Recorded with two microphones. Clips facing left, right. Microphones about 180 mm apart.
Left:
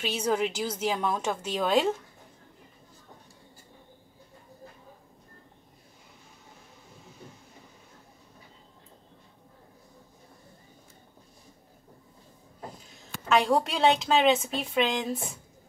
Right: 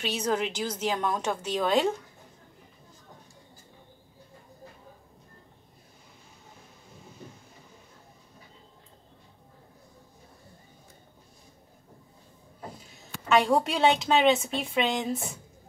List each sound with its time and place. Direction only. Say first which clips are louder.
0.0 s a woman's voice: left 1 dB; 10° left (ahead or behind)
13.3 s a woman's voice: right 1 dB; centre (ahead or behind)